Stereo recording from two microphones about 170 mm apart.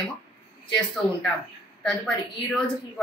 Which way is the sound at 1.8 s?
5° left (ahead or behind).